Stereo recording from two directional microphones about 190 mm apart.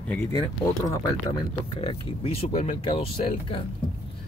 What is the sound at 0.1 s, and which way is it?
Speech, 15° left (ahead or behind).